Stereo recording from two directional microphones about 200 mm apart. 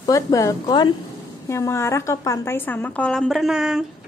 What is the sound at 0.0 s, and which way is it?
A woman's voice, 15° left (ahead or behind).